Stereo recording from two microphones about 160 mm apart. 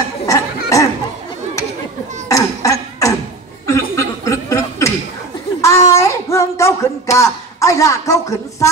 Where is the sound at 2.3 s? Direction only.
20° left (ahead or behind).